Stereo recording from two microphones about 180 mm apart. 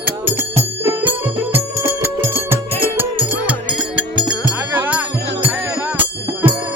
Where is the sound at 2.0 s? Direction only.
10° right (ahead or behind).